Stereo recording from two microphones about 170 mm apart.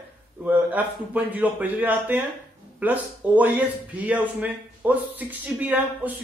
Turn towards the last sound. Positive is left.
turn(degrees=-10)  # may be behind; listen again after turning